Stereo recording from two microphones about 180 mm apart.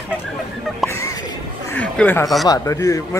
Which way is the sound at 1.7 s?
10° left (ahead or behind).